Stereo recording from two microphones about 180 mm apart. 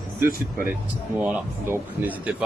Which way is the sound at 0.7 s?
5° right (ahead or behind).